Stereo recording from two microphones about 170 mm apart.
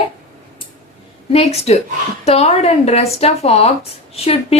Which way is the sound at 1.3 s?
35° left (ahead or behind).